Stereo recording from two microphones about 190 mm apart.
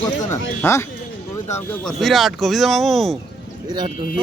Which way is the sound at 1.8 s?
Centre (ahead or behind).